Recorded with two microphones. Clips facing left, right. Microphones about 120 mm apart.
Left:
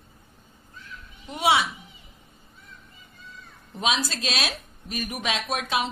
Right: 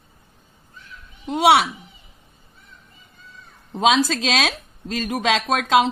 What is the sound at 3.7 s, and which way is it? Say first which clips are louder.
Speech: right 9 dB; 90° right.